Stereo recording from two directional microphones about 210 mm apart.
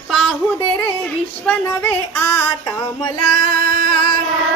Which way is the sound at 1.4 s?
10° left (ahead or behind).